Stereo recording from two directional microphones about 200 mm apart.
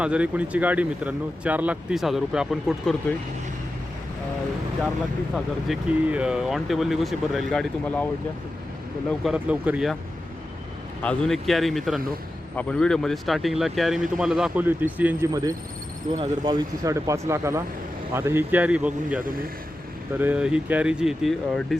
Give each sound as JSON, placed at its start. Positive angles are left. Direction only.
{"t": 0.0, "sound": "speech", "side_deg": -5}
{"t": 5.3, "sound": "speech", "side_deg": 0}
{"t": 9.2, "sound": "speech", "side_deg": -5}
{"t": 11.0, "sound": "speech", "side_deg": 5}